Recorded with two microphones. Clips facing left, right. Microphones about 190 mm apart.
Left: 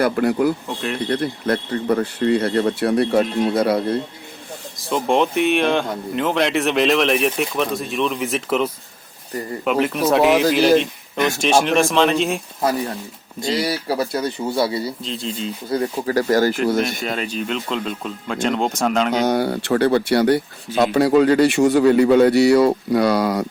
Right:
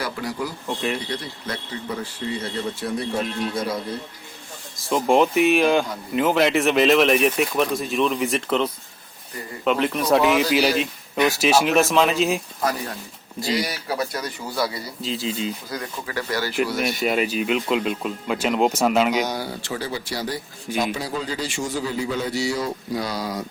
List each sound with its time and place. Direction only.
0.0 s a man's voice: 55° left (ahead or behind)
4.8 s speech: centre (ahead or behind)
13.5 s speech: 30° left (ahead or behind)
15.0 s speech: 5° right (ahead or behind)
15.7 s speech: 35° left (ahead or behind)
17.1 s speech: 5° right (ahead or behind)
19.2 s a man's voice: 60° left (ahead or behind)